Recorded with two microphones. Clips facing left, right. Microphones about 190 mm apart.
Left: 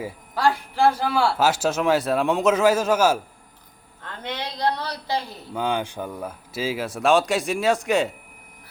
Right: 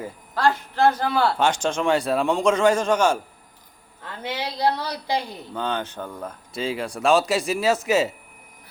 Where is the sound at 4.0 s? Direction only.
5° right (ahead or behind).